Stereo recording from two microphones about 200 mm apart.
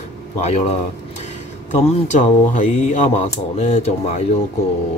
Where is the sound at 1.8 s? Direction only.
35° left (ahead or behind).